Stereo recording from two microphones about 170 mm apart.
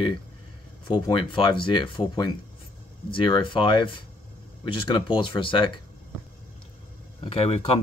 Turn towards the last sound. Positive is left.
turn(degrees=35)  # may be behind; listen again after turning